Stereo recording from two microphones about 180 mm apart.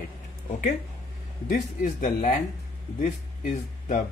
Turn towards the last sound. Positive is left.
turn(degrees=45)  # may be behind; listen again after turning